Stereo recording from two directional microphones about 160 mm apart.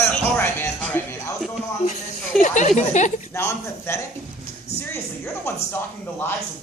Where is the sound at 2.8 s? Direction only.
50° left (ahead or behind).